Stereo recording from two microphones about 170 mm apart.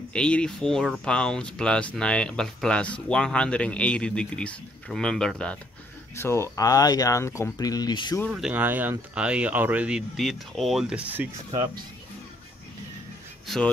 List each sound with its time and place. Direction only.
0.1 s speech: 5° left (ahead or behind)
6.1 s speech: 15° left (ahead or behind)
8.3 s speech: 5° right (ahead or behind)
13.5 s speech: centre (ahead or behind)